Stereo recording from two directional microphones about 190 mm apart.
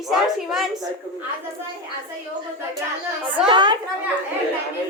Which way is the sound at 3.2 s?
10° right (ahead or behind).